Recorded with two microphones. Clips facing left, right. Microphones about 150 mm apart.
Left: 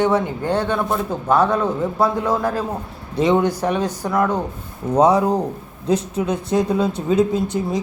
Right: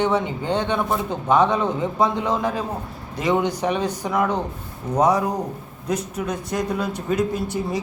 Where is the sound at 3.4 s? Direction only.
15° right (ahead or behind).